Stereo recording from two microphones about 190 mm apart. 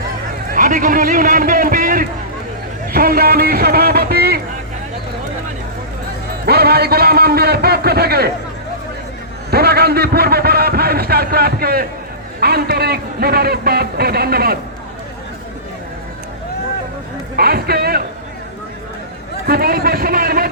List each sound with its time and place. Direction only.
0.5 s a man's voice: 45° right (ahead or behind)
6.4 s a man's voice: 55° right (ahead or behind)
9.5 s a sound: 55° right (ahead or behind)
12.4 s speech: 55° right (ahead or behind)
17.3 s a man's voice: 55° right (ahead or behind)
19.5 s speech: 55° right (ahead or behind)